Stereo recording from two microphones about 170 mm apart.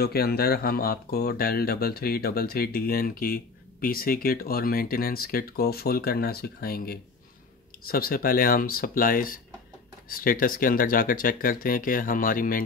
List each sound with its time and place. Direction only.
0.0 s speech: 65° left (ahead or behind)